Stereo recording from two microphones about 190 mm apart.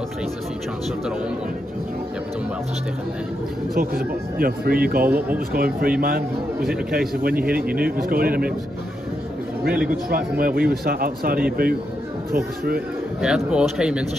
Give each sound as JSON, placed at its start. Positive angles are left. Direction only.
{"t": 3.7, "sound": "speech", "side_deg": -50}
{"t": 7.2, "sound": "speech", "side_deg": -50}
{"t": 10.0, "sound": "speech", "side_deg": -50}
{"t": 13.2, "sound": "speech", "side_deg": -5}